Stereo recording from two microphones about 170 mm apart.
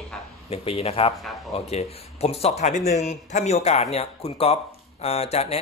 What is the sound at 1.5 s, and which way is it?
Speech, 35° left (ahead or behind).